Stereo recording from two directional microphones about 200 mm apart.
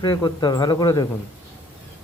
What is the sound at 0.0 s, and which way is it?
Speech, 20° left (ahead or behind).